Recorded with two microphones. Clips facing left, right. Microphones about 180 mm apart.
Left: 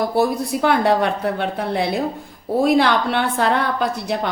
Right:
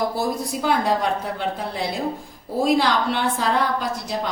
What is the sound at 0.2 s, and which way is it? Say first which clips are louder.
A woman's voice: left 6 dB; 65° left (ahead or behind).